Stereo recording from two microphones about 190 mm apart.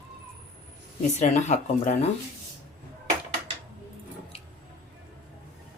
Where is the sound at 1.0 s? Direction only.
40° left (ahead or behind).